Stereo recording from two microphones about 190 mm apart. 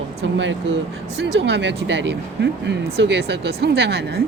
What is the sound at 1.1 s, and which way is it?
Speech, 65° right (ahead or behind).